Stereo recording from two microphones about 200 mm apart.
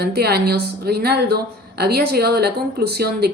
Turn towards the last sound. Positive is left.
turn(degrees=-55)  # may be behind; listen again after turning